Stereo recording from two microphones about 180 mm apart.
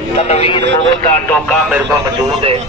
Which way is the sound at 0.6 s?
80° right.